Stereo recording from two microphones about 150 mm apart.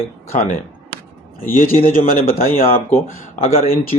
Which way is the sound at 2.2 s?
80° left.